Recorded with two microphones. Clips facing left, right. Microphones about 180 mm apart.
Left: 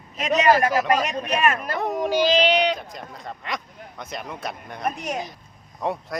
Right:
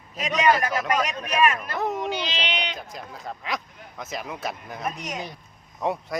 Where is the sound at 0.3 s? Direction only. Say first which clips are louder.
Left 3 dB; 35° left (ahead or behind).